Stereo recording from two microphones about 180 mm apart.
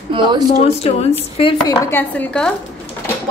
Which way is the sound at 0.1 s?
25° right (ahead or behind).